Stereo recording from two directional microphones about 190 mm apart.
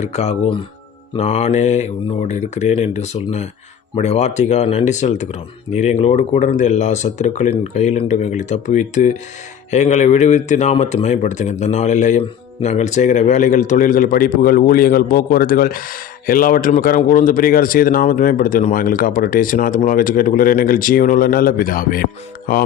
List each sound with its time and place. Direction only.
0.0 s speech: 35° left (ahead or behind)